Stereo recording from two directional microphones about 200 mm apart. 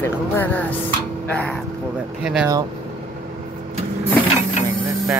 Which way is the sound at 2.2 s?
5° right (ahead or behind).